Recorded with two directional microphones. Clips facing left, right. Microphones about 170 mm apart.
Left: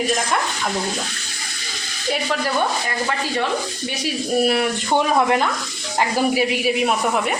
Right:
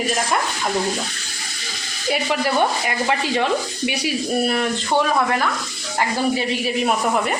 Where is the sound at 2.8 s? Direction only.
20° right (ahead or behind).